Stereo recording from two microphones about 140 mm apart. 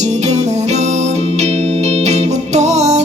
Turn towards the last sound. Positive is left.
turn(degrees=-55)  # may be behind; listen again after turning